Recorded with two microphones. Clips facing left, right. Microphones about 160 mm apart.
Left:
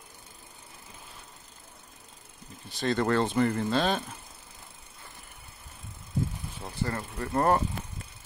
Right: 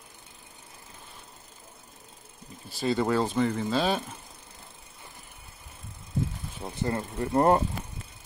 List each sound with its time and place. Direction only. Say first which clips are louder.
2.7 s speech: right 1 dB; 5° right (ahead or behind)
6.6 s speech: right 3 dB; 20° right (ahead or behind)